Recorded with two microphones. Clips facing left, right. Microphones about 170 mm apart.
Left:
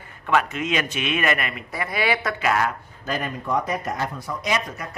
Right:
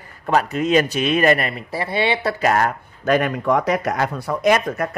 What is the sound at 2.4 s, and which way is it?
Speech, 45° right (ahead or behind).